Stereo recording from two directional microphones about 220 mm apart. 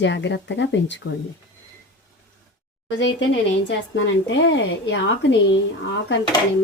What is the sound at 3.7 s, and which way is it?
A woman's voice, 55° left (ahead or behind).